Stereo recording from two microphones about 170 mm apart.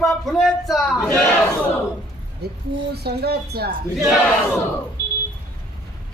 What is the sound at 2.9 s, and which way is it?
Speech, 70° right (ahead or behind).